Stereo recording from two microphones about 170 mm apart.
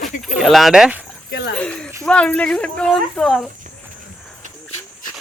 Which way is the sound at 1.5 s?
5° left (ahead or behind).